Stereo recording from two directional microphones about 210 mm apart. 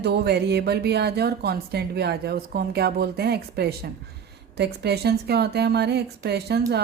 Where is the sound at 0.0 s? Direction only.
50° right (ahead or behind).